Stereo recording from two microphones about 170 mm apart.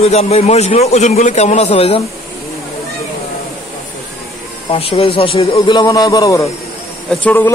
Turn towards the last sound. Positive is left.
turn(degrees=10)  # may be behind; listen again after turning